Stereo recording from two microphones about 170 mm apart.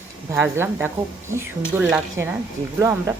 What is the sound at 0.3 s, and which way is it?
Speech, 15° right (ahead or behind).